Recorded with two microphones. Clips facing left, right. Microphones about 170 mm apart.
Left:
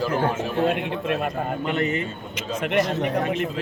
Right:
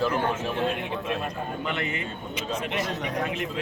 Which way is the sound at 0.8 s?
65° left (ahead or behind).